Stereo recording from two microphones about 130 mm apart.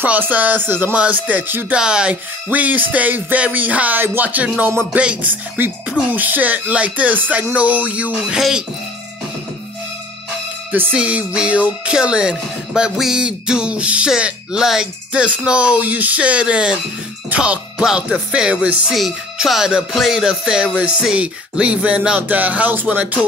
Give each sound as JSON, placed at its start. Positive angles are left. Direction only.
{"t": 0.0, "sound": "music", "side_deg": -10}
{"t": 10.7, "sound": "music", "side_deg": -10}